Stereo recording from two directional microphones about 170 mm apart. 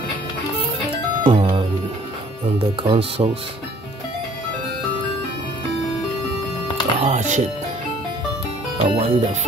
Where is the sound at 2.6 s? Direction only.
35° right (ahead or behind).